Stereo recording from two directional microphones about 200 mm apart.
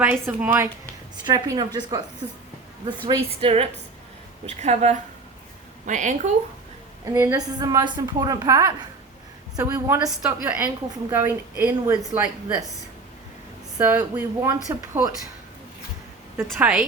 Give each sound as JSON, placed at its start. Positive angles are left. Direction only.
{"t": 0.0, "sound": "a woman's voice", "side_deg": -10}
{"t": 1.1, "sound": "a woman's voice", "side_deg": -20}
{"t": 7.0, "sound": "a woman's voice", "side_deg": -15}
{"t": 13.7, "sound": "a woman's voice", "side_deg": -10}
{"t": 16.5, "sound": "a woman's voice", "side_deg": -5}